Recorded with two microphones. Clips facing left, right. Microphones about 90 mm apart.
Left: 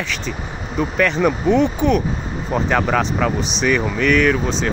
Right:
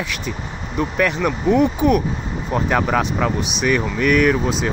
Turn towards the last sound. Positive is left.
turn(degrees=-5)  # may be behind; listen again after turning